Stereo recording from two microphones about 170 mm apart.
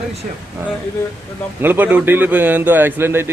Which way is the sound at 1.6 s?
10° right (ahead or behind).